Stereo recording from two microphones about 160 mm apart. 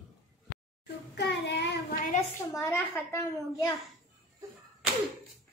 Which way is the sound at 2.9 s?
15° left (ahead or behind).